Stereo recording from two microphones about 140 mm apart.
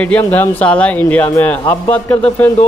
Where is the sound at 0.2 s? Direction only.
15° left (ahead or behind).